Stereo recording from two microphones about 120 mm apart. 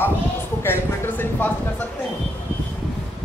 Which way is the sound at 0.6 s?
20° left (ahead or behind).